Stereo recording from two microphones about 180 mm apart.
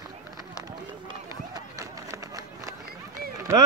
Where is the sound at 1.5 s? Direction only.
20° right (ahead or behind).